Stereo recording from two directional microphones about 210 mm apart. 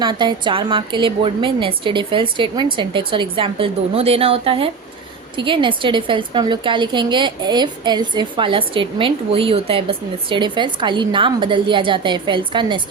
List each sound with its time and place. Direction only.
0.0 s a woman's voice: 20° right (ahead or behind)